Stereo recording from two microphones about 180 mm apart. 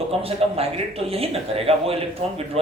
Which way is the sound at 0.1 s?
35° right (ahead or behind).